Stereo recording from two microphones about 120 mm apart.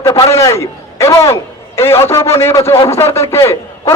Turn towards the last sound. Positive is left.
turn(degrees=25)  # may be behind; listen again after turning